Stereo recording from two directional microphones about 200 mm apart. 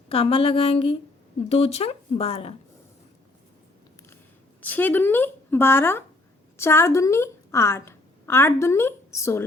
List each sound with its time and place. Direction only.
0.1 s speech: 30° left (ahead or behind)
4.6 s a woman's voice: 10° left (ahead or behind)